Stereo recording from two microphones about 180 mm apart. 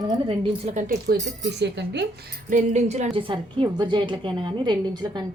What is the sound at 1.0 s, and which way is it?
Speech, 70° right (ahead or behind).